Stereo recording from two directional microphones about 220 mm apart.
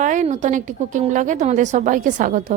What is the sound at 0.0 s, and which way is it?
A woman's voice, 35° right (ahead or behind).